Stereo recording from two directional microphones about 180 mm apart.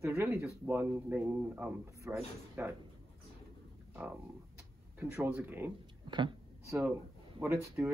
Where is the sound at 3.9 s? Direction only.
10° right (ahead or behind).